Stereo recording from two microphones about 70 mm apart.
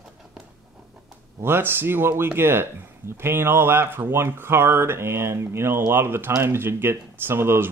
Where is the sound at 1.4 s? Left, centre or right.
Right.